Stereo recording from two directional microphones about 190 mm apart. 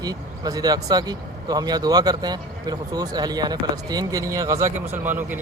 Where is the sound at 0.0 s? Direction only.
20° right (ahead or behind).